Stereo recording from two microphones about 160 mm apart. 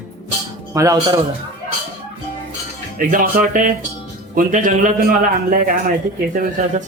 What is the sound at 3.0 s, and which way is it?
A man's voice, 60° right (ahead or behind).